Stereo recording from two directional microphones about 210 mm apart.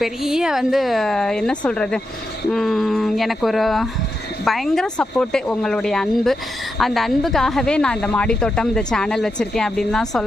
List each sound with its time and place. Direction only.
0.0 s speech: centre (ahead or behind)